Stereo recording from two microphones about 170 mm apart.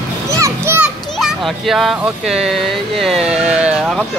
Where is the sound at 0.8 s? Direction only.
Centre (ahead or behind).